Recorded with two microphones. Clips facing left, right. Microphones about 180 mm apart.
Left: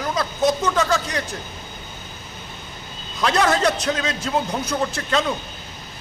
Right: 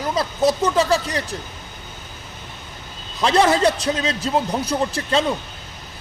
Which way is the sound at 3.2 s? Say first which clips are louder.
Right 3 dB; 30° right (ahead or behind).